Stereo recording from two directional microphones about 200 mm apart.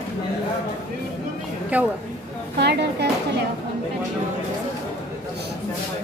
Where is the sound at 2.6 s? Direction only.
55° right (ahead or behind).